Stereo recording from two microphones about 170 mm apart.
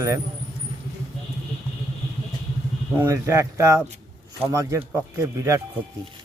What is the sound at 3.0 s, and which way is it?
Speech, 15° right (ahead or behind).